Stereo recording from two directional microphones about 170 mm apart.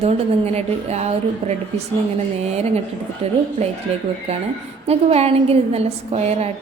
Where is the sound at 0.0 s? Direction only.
40° right (ahead or behind).